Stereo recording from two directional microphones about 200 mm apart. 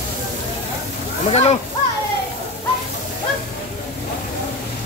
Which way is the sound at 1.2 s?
30° left (ahead or behind).